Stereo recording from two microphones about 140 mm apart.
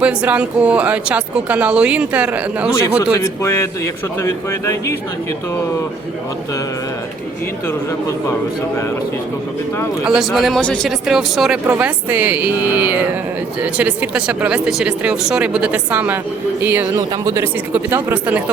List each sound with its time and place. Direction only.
0.0 s speech: 10° right (ahead or behind)
3.0 s speech: 25° left (ahead or behind)
10.0 s speech: 5° right (ahead or behind)
11.6 s speech: 15° right (ahead or behind)